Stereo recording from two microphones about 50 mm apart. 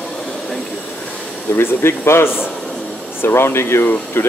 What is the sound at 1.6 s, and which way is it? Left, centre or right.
Speech, left.